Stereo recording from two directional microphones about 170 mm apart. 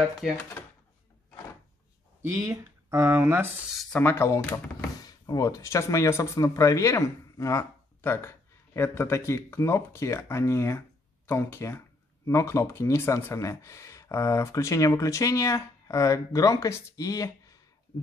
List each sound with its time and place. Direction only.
2.4 s speech: 20° right (ahead or behind)
4.0 s speech: 15° left (ahead or behind)